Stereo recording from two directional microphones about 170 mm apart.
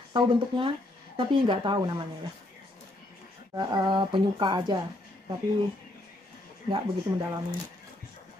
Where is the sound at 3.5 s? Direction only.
25° right (ahead or behind).